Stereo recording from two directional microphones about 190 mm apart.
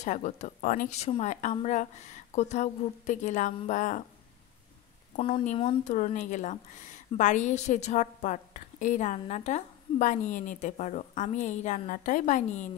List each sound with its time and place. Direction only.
0.0 s a woman's voice: 40° left (ahead or behind)
5.1 s a woman's voice: 35° left (ahead or behind)